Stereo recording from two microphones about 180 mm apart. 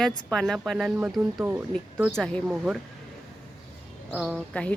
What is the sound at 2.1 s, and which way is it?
Speech, 5° left (ahead or behind).